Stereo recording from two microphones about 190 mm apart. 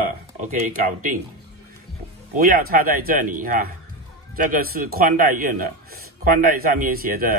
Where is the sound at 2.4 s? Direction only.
50° right (ahead or behind).